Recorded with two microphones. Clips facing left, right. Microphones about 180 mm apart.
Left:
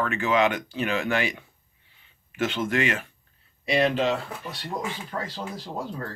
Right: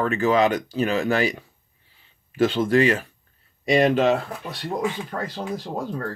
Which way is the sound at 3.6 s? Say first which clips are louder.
Right 5 dB; 45° right (ahead or behind).